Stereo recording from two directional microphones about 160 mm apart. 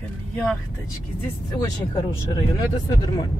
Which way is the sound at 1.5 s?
20° left (ahead or behind).